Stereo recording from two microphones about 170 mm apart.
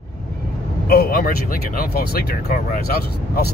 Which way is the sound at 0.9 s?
60° left (ahead or behind).